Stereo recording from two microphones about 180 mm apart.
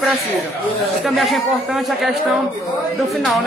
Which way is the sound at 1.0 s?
Centre (ahead or behind).